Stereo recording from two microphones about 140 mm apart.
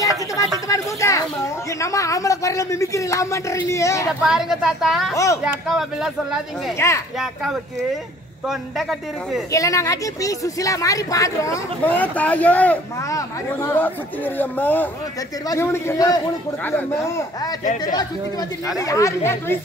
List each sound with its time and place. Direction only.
0.7 s a sound: 20° left (ahead or behind)
1.8 s speech: 20° left (ahead or behind)
4.2 s speech: 5° right (ahead or behind)
5.1 s speech: 20° left (ahead or behind)
5.4 s speech: 5° right (ahead or behind)
6.8 s speech: 20° left (ahead or behind)
9.5 s speech: 25° left (ahead or behind)
11.9 s speech: 10° left (ahead or behind)
18.9 s speech: 20° left (ahead or behind)